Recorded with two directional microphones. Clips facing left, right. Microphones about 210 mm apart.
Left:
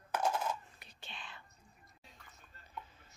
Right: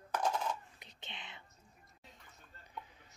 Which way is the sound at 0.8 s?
20° right (ahead or behind).